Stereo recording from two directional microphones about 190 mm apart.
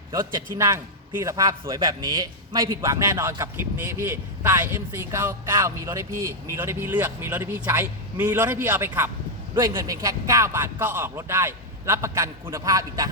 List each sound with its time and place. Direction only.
0.1 s a man's voice: 15° right (ahead or behind)